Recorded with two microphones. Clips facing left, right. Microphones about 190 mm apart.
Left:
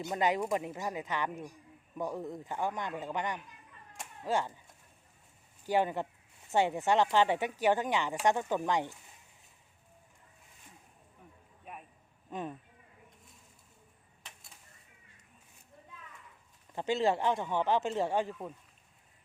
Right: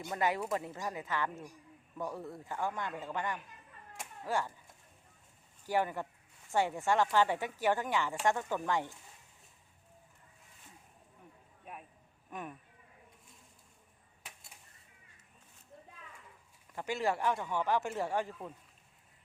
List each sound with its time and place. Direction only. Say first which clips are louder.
0.1 s a man's voice: left 3 dB; 20° left (ahead or behind)
5.6 s a man's voice: left 3 dB; 20° left (ahead or behind)
11.6 s a sound: left 1 dB; centre (ahead or behind)
12.3 s speech: left 5 dB; 25° left (ahead or behind)
16.7 s speech: left 4 dB; 25° left (ahead or behind)